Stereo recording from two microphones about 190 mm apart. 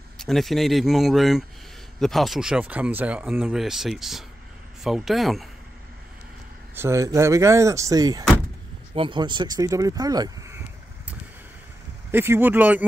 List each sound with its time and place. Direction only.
0.2 s speech: centre (ahead or behind)
6.7 s speech: 15° right (ahead or behind)
12.1 s speech: 10° right (ahead or behind)